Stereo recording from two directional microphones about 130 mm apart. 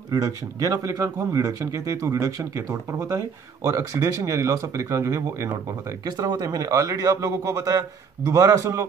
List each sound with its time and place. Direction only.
0.1 s speech: 30° right (ahead or behind)